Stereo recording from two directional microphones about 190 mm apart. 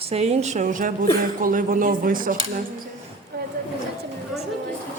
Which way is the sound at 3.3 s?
55° right (ahead or behind).